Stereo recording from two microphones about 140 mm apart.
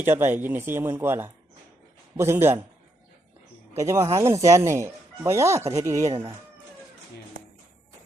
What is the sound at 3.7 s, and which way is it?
Speech, 20° right (ahead or behind).